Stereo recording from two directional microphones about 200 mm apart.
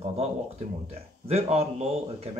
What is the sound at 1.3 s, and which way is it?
Speech, 30° right (ahead or behind).